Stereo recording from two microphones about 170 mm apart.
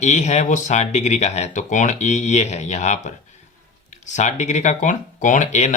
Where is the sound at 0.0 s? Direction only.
40° left (ahead or behind).